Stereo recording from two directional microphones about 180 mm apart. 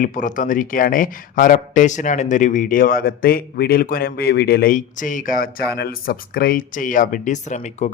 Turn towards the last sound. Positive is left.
turn(degrees=40)  # may be behind; listen again after turning